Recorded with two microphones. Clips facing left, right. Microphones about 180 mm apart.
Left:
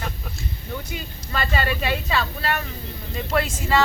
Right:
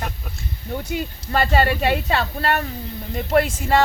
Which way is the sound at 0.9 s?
60° right (ahead or behind).